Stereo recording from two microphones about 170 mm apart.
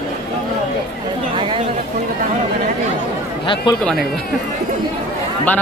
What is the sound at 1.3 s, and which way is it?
Chatter, 30° right (ahead or behind).